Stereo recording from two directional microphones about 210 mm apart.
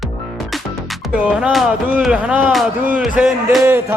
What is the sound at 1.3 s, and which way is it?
A man's voice, 5° right (ahead or behind).